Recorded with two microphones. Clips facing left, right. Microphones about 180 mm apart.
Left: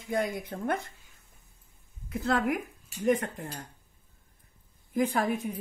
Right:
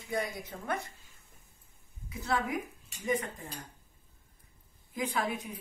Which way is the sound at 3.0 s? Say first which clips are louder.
Left 6 dB; 60° left (ahead or behind).